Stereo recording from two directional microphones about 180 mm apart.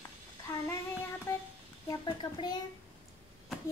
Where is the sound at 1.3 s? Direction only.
15° left (ahead or behind).